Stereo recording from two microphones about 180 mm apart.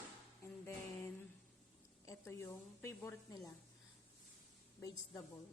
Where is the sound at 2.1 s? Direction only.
15° left (ahead or behind).